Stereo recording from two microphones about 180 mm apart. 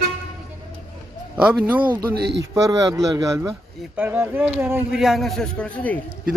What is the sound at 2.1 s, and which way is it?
Speech, 70° right (ahead or behind).